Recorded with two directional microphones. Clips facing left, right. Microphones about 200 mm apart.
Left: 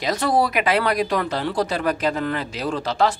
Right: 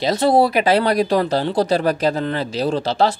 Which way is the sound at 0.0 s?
25° right (ahead or behind).